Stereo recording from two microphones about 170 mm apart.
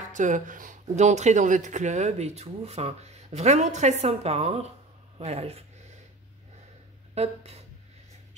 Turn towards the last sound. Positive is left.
turn(degrees=-40)  # may be behind; listen again after turning